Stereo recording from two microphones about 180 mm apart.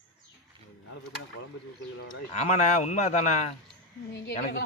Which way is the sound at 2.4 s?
40° left (ahead or behind).